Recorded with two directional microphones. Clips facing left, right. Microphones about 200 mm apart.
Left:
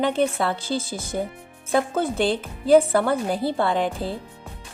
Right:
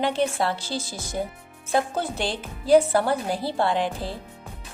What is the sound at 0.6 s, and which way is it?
A woman's voice, 55° left (ahead or behind).